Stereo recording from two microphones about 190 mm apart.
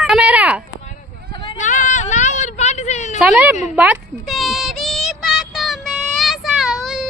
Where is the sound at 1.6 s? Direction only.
40° left (ahead or behind).